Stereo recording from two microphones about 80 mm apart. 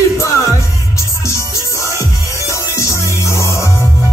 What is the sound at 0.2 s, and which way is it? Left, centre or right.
Music, left.